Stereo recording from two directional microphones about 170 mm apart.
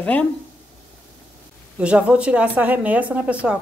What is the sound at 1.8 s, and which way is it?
Speech, 5° right (ahead or behind).